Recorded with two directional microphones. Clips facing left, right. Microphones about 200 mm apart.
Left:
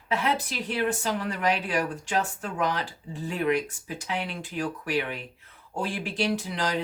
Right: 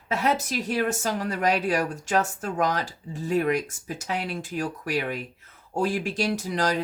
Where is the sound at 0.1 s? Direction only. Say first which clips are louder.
Right 2 dB; 45° right (ahead or behind).